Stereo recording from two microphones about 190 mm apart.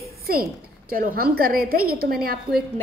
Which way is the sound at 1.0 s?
50° right (ahead or behind).